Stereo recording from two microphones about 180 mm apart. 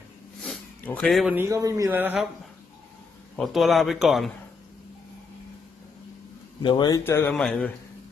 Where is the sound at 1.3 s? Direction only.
15° right (ahead or behind).